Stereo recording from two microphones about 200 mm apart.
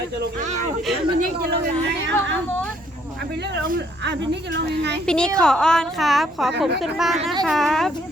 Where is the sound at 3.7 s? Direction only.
60° right (ahead or behind).